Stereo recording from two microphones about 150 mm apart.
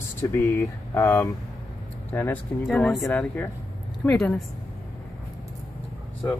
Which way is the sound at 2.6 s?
Centre (ahead or behind).